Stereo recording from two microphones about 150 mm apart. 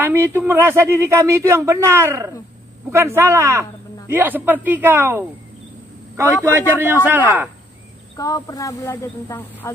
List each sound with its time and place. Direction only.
0.0 s speech: 15° right (ahead or behind)
8.2 s speech: 25° left (ahead or behind)